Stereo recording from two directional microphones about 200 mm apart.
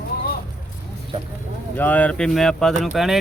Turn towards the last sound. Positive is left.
turn(degrees=0)  # may be behind; listen again after turning